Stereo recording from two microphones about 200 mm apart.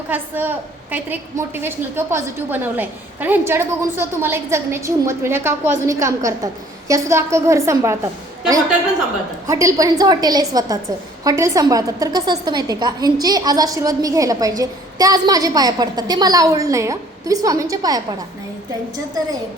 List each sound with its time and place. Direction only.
0.1 s a woman's voice: 10° right (ahead or behind)
9.5 s a woman's voice: 15° right (ahead or behind)